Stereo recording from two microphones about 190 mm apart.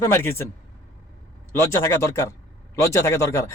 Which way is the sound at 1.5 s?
15° left (ahead or behind).